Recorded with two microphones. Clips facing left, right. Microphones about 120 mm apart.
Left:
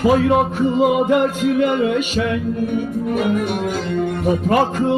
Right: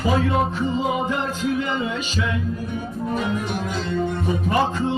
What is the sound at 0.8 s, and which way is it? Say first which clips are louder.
Music: left 11 dB; 65° left (ahead or behind).